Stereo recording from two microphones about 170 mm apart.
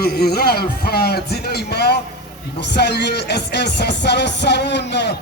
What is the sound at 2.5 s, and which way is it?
A man's voice, 85° left.